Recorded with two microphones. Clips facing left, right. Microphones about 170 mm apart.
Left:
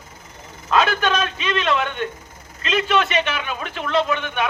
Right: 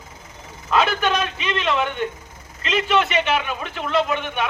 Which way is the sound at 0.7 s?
20° right (ahead or behind).